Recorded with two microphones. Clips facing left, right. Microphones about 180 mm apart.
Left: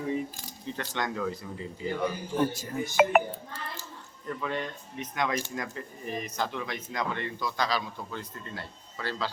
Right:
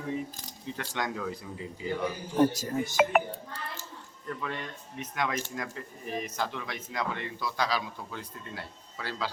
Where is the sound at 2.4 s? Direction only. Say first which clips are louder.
Right 4 dB; 40° right (ahead or behind).